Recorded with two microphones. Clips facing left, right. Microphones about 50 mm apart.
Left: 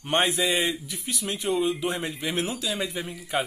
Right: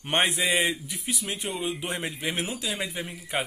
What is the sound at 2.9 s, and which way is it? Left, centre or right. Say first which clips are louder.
Speech: left 2 dB; centre.